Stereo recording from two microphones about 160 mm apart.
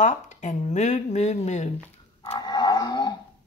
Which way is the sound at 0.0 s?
45° left (ahead or behind).